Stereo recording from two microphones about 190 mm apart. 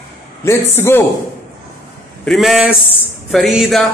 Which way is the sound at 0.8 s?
10° left (ahead or behind).